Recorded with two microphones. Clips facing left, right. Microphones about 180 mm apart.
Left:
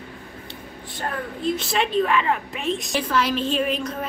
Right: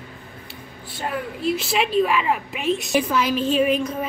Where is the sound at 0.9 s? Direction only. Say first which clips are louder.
Right 2 dB; 5° right (ahead or behind).